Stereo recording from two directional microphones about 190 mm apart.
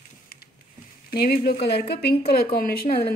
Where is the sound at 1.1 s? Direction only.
55° left (ahead or behind).